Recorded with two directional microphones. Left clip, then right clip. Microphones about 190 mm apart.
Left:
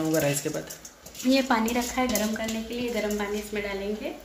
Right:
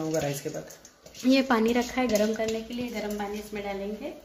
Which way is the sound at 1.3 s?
55° right (ahead or behind).